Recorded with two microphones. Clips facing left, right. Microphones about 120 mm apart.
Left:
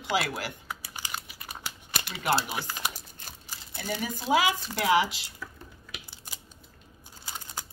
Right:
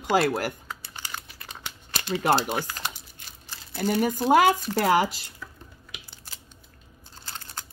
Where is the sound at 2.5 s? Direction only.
10° left (ahead or behind).